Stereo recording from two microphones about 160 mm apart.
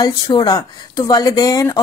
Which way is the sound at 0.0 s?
25° left (ahead or behind).